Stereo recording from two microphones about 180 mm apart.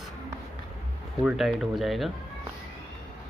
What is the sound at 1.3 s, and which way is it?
Speech, centre (ahead or behind).